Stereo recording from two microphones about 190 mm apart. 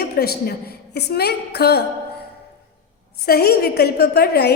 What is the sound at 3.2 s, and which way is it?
A woman's voice, 55° left (ahead or behind).